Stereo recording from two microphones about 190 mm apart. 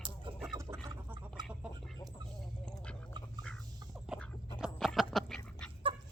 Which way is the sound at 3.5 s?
5° left (ahead or behind).